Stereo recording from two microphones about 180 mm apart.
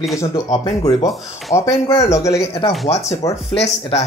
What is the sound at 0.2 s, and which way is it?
Speech, 20° left (ahead or behind).